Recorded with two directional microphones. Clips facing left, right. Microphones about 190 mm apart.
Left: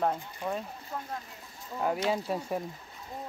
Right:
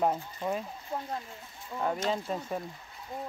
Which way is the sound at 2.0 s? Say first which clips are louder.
Left 2 dB; 5° left (ahead or behind).